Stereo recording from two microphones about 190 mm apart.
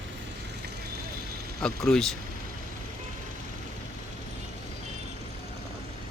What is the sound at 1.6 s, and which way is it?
Speech, 5° left (ahead or behind).